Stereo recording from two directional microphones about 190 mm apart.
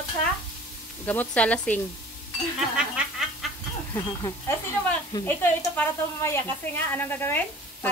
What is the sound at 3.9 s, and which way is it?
Speech, 20° left (ahead or behind).